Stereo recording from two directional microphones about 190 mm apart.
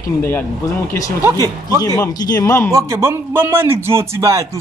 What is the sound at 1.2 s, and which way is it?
Speech, 20° right (ahead or behind).